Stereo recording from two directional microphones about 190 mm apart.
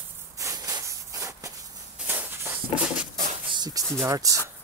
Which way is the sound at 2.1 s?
10° right (ahead or behind).